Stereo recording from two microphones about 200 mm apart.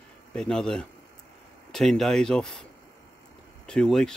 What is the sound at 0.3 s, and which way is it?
Speech, 5° left (ahead or behind).